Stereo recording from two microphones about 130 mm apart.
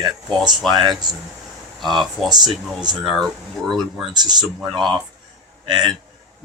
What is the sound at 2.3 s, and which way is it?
Speech, 35° right (ahead or behind).